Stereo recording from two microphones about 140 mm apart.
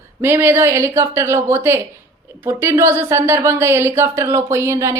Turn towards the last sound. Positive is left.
turn(degrees=-20)  # may be behind; listen again after turning